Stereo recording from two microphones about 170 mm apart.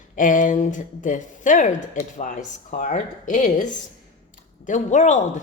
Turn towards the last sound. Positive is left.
turn(degrees=45)  # may be behind; listen again after turning